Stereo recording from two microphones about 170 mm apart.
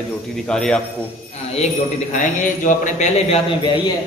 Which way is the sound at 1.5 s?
45° left (ahead or behind).